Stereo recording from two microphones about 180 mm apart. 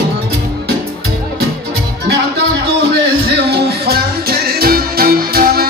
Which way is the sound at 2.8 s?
70° right (ahead or behind).